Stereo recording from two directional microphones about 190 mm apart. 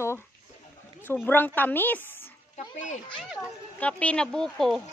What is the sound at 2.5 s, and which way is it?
Speech, 40° left (ahead or behind).